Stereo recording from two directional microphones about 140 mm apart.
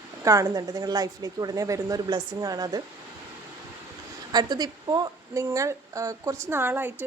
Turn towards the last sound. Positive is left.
turn(degrees=-15)  # may be behind; listen again after turning